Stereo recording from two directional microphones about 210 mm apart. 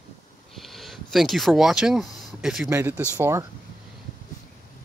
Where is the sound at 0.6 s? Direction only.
Centre (ahead or behind).